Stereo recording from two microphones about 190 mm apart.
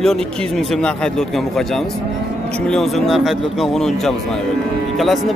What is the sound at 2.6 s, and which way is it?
A man's voice, centre (ahead or behind).